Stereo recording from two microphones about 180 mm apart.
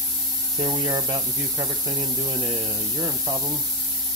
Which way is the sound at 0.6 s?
25° right (ahead or behind).